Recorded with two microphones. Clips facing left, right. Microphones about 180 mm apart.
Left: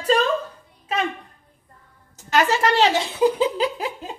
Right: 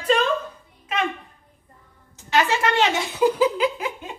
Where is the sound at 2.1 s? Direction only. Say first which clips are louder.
Left 1 dB; 45° left (ahead or behind).